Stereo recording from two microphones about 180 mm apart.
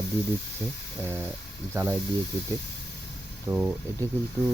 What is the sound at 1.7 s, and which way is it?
Speech, 15° right (ahead or behind).